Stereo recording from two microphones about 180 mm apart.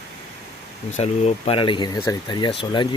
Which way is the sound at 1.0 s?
35° left (ahead or behind).